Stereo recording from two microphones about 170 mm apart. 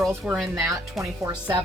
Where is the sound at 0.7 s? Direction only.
20° right (ahead or behind).